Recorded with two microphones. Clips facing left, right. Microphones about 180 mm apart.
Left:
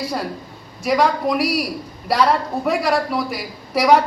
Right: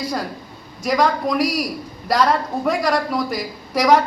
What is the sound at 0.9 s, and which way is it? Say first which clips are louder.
A man's voice: left 1 dB; 5° left (ahead or behind).